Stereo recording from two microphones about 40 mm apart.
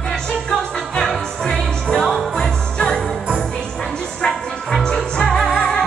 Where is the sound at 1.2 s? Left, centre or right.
Centre.